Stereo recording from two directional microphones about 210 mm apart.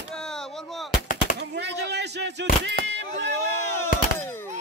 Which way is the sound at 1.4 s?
55° right (ahead or behind).